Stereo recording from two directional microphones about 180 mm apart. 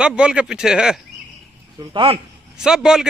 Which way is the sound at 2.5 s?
5° right (ahead or behind).